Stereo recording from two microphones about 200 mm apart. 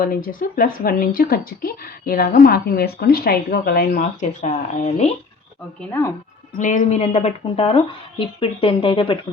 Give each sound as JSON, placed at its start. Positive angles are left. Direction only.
{"t": 0.0, "sound": "speech", "side_deg": 45}
{"t": 6.6, "sound": "speech", "side_deg": 40}